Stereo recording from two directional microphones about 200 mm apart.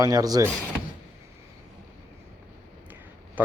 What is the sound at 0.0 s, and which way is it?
Speech, 20° right (ahead or behind).